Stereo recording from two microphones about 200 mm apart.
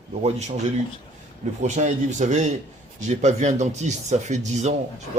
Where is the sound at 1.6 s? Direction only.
35° right (ahead or behind).